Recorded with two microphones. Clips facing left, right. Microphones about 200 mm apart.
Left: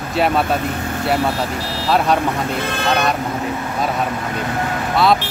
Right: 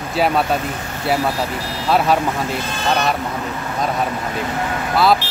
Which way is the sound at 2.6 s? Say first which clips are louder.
Left 1 dB; 60° left (ahead or behind).